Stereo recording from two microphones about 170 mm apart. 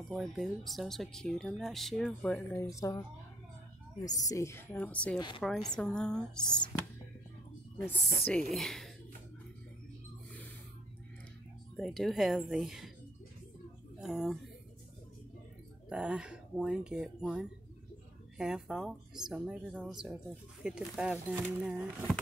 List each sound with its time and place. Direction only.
0.1 s speech: centre (ahead or behind)
2.6 s speech: 20° left (ahead or behind)
4.0 s a woman's voice: 20° left (ahead or behind)
8.3 s speech: centre (ahead or behind)
11.7 s speech: centre (ahead or behind)
13.9 s speech: 5° right (ahead or behind)
15.9 s speech: 5° right (ahead or behind)